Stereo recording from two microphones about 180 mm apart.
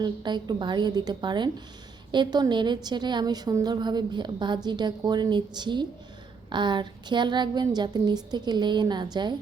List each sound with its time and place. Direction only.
0.0 s a woman's voice: 25° right (ahead or behind)